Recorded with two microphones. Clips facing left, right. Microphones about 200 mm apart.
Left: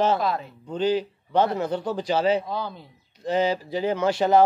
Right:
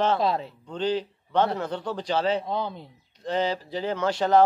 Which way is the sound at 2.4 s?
20° right (ahead or behind).